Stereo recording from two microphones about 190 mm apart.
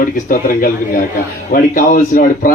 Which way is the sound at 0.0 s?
45° left (ahead or behind).